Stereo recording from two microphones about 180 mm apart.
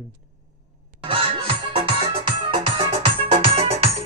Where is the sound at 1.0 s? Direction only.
30° right (ahead or behind).